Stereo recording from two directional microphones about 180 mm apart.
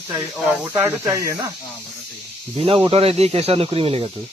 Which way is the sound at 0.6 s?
10° right (ahead or behind).